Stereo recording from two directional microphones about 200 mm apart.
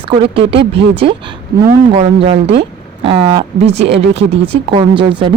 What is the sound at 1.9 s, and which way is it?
Speech, 30° right (ahead or behind).